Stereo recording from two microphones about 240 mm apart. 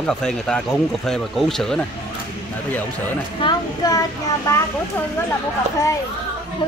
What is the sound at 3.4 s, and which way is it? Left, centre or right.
Speech, centre.